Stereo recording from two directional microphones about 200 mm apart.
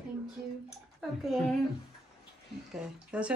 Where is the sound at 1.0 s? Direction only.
Centre (ahead or behind).